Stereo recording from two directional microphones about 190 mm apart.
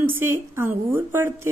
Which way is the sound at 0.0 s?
10° right (ahead or behind).